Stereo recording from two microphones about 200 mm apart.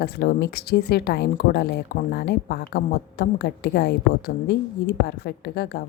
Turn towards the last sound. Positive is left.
turn(degrees=55)  # may be behind; listen again after turning